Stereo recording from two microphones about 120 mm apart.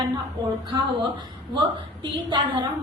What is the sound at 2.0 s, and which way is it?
Speech, 40° right (ahead or behind).